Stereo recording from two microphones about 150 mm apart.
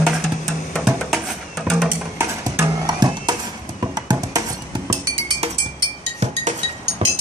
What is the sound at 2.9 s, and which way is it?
Music, 30° right (ahead or behind).